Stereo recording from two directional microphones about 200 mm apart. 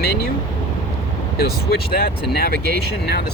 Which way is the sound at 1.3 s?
50° left (ahead or behind).